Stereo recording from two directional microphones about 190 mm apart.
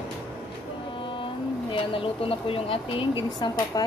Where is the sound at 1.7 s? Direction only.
30° left (ahead or behind).